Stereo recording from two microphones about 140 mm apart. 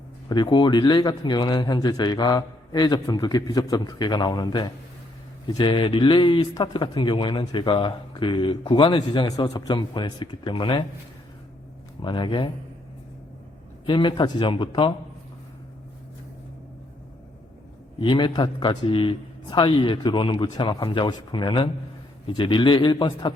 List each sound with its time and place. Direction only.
0.3 s speech: 30° left (ahead or behind)
12.0 s speech: 35° left (ahead or behind)
13.8 s speech: 35° left (ahead or behind)
18.0 s speech: 35° left (ahead or behind)